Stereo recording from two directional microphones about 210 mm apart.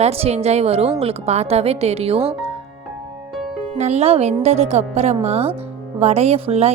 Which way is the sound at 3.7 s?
35° right (ahead or behind).